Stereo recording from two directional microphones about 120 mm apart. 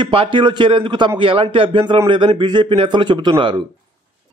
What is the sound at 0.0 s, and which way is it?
A man's voice, 45° right (ahead or behind).